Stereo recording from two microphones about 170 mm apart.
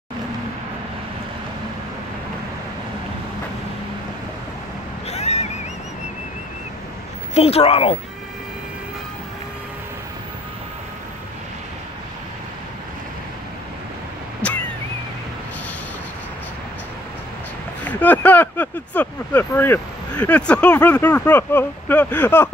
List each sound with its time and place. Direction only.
5.1 s vehicle: 40° left (ahead or behind)
7.3 s speech: 35° left (ahead or behind)
17.8 s speech: 10° left (ahead or behind)